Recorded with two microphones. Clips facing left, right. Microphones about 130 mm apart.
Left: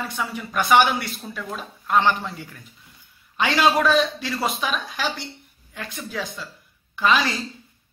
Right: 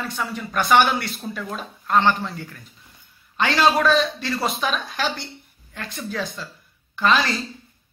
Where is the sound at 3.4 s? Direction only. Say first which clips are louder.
Right 1 dB; 10° left (ahead or behind).